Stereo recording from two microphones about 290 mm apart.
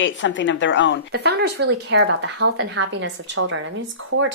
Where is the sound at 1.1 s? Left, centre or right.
Right.